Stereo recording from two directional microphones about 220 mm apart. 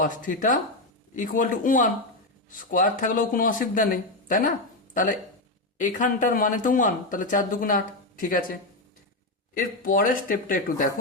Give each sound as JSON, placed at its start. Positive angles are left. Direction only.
{"t": 0.0, "sound": "speech", "side_deg": 35}
{"t": 5.7, "sound": "speech", "side_deg": 35}
{"t": 9.6, "sound": "speech", "side_deg": 40}